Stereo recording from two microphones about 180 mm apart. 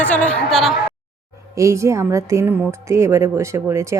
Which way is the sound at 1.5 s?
15° right (ahead or behind).